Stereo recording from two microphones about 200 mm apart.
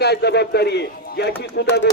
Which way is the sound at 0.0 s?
55° left (ahead or behind).